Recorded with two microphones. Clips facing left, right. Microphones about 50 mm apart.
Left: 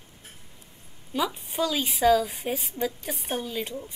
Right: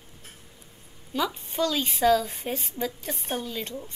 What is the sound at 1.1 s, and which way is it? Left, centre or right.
A woman's voice, centre.